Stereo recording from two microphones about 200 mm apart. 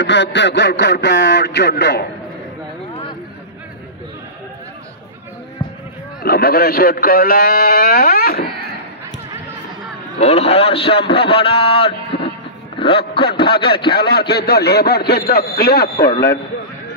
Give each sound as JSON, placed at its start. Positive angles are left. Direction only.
{"t": 0.0, "sound": "a sound", "side_deg": 60}
{"t": 6.2, "sound": "a man's voice", "side_deg": 50}
{"t": 10.1, "sound": "a man's voice", "side_deg": 35}
{"t": 13.1, "sound": "a sound", "side_deg": 55}
{"t": 13.6, "sound": "a man's voice", "side_deg": 25}
{"t": 13.9, "sound": "a man's voice", "side_deg": 55}